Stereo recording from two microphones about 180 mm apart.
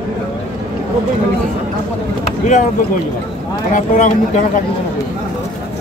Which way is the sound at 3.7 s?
45° left (ahead or behind).